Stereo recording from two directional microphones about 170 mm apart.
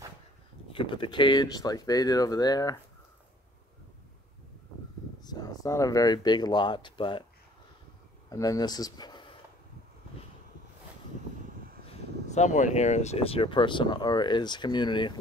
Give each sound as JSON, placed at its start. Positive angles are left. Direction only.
{"t": 0.7, "sound": "speech", "side_deg": 30}
{"t": 5.2, "sound": "speech", "side_deg": 25}
{"t": 8.3, "sound": "speech", "side_deg": 20}
{"t": 11.9, "sound": "speech", "side_deg": 45}